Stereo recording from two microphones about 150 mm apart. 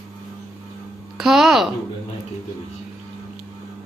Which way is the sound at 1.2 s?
Centre (ahead or behind).